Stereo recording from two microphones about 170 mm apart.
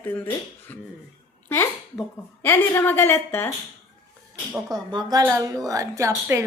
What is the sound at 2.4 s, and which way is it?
A woman's voice, 15° left (ahead or behind).